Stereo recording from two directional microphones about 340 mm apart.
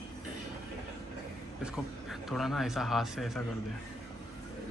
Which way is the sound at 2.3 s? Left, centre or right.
Centre.